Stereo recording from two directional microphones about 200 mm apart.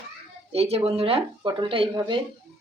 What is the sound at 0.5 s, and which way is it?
Speech, 30° right (ahead or behind).